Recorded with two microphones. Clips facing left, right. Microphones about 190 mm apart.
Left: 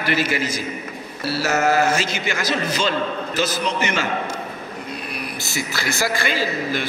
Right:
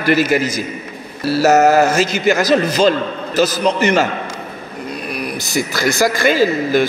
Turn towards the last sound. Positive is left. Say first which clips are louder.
# right 9 dB
turn(degrees=-45)  # may be behind; listen again after turning